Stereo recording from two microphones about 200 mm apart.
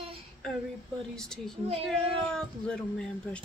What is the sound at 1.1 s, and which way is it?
Speech, 5° left (ahead or behind).